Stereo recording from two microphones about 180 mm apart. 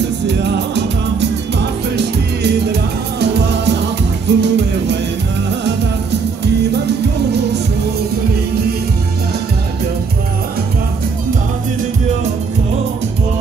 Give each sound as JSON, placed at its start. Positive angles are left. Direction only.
{"t": 0.3, "sound": "music", "side_deg": -75}